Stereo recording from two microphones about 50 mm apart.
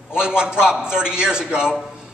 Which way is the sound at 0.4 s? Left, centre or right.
Centre.